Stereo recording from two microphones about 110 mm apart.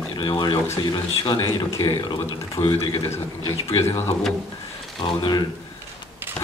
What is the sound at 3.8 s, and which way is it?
Speech, 25° left (ahead or behind).